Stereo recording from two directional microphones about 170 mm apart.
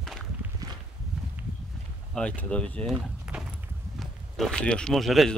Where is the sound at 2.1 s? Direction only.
5° left (ahead or behind).